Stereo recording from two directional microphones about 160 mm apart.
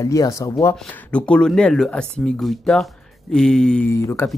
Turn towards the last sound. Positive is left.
turn(degrees=15)  # may be behind; listen again after turning